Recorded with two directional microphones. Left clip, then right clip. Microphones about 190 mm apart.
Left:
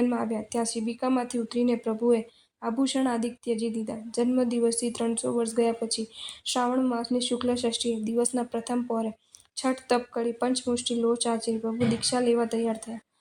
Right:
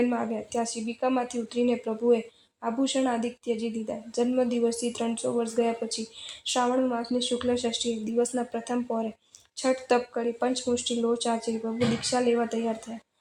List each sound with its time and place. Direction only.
0.0 s a woman's voice: 45° left (ahead or behind)